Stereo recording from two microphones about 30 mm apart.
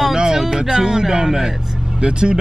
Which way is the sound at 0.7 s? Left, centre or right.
Right.